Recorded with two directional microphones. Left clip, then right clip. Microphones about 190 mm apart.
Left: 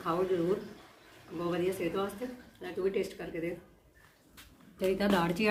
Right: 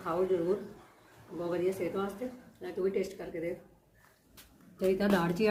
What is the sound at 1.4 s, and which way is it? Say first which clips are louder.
Speech: even; 5° left (ahead or behind).